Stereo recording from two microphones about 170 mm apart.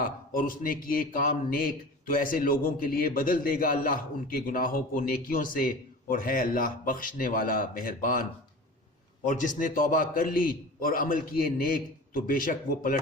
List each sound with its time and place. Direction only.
0.0 s a man's voice: 55° left (ahead or behind)